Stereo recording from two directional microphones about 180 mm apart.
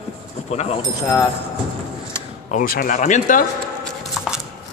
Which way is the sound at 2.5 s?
50° left (ahead or behind).